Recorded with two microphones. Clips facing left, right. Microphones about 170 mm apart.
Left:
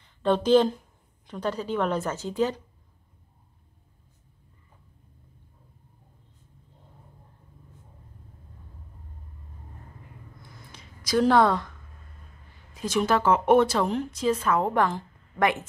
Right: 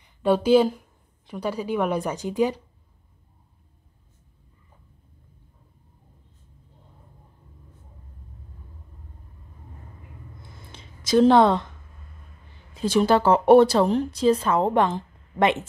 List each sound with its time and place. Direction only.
0.0 s a woman's voice: 10° right (ahead or behind)
10.4 s a sound: 25° right (ahead or behind)
12.7 s speech: 30° right (ahead or behind)